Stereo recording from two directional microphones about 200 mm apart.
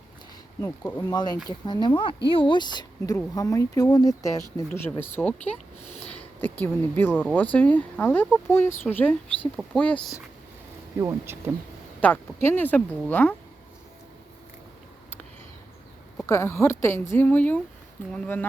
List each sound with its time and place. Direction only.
0.6 s speech: 10° left (ahead or behind)
5.9 s a sound: 30° left (ahead or behind)
6.4 s speech: 10° left (ahead or behind)
11.0 s speech: 15° right (ahead or behind)
11.9 s speech: 10° left (ahead or behind)
16.2 s speech: 15° left (ahead or behind)